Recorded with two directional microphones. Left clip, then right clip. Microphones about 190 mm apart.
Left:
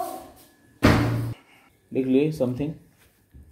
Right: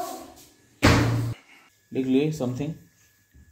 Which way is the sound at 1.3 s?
Centre (ahead or behind).